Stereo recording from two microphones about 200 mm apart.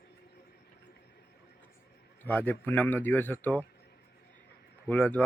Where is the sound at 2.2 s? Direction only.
10° left (ahead or behind).